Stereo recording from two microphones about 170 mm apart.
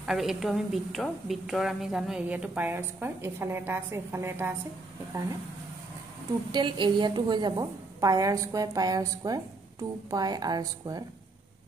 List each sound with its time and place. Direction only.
0.0 s a woman's voice: centre (ahead or behind)
6.5 s a woman's voice: 25° right (ahead or behind)